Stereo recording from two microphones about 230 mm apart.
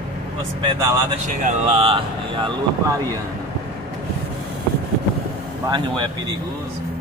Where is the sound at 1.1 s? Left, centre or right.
Right.